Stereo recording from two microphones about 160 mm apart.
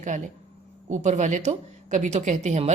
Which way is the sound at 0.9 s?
50° right (ahead or behind).